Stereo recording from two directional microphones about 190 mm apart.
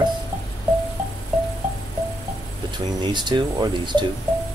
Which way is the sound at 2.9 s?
20° right (ahead or behind).